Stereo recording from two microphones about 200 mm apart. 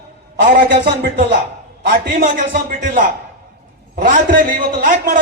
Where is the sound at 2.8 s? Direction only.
40° right (ahead or behind).